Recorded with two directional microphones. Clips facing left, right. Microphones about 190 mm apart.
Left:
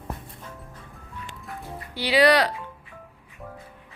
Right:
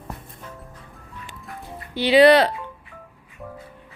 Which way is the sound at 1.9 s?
25° right (ahead or behind).